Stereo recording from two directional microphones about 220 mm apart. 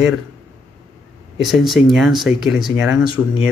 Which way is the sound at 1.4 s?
Centre (ahead or behind).